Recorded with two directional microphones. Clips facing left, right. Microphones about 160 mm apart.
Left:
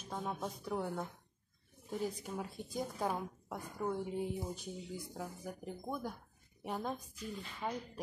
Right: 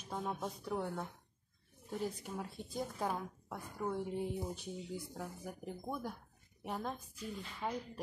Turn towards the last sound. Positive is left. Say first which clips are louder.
# even
turn(degrees=0)  # may be behind; listen again after turning